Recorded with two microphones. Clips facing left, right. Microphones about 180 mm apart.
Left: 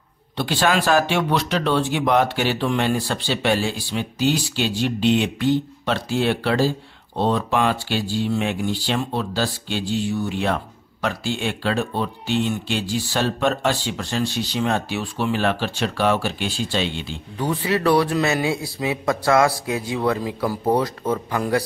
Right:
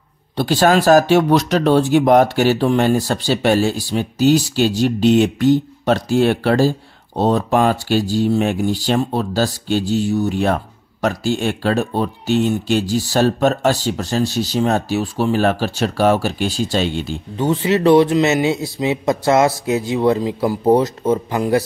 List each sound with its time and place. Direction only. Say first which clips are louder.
0.4 s speech: right 6 dB; 40° right (ahead or behind)
17.4 s a man's voice: right 5 dB; 25° right (ahead or behind)